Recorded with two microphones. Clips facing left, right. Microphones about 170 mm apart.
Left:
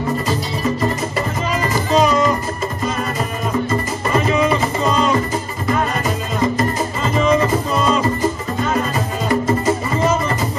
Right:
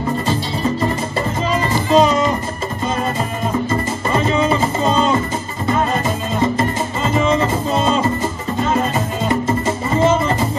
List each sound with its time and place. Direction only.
1.7 s music: 30° right (ahead or behind)
4.1 s music: 30° right (ahead or behind)